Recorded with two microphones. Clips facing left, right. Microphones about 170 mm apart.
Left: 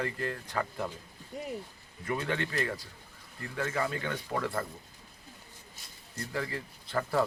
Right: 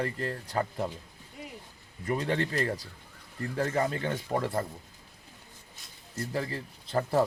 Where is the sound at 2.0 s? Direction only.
35° right (ahead or behind).